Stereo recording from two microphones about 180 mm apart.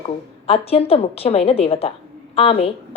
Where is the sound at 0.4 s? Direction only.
35° left (ahead or behind).